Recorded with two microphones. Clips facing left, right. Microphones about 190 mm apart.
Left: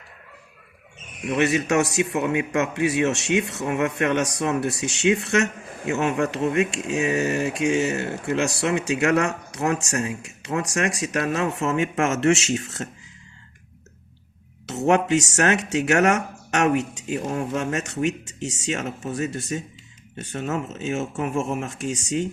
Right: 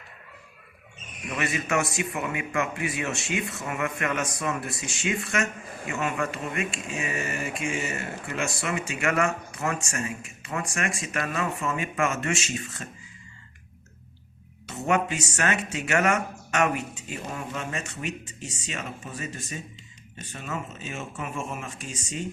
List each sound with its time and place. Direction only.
1.4 s speech: 75° left (ahead or behind)
14.7 s speech: 75° left (ahead or behind)
20.9 s speech: 40° left (ahead or behind)
21.6 s speech: 75° left (ahead or behind)